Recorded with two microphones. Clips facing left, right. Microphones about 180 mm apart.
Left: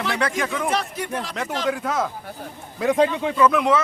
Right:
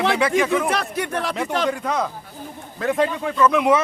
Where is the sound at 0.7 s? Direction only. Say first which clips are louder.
Right 1 dB; 65° right (ahead or behind).